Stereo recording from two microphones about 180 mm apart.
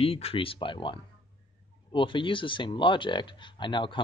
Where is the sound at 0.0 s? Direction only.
30° left (ahead or behind).